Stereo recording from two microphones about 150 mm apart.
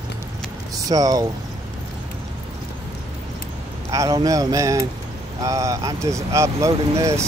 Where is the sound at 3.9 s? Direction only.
20° right (ahead or behind).